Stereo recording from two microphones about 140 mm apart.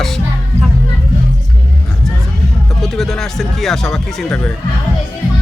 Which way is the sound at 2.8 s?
Centre (ahead or behind).